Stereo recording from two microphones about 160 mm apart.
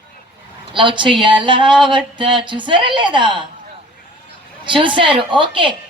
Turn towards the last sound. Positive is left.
turn(degrees=-30)  # may be behind; listen again after turning